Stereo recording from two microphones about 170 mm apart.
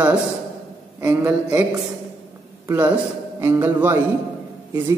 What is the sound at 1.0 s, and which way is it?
Speech, 15° right (ahead or behind).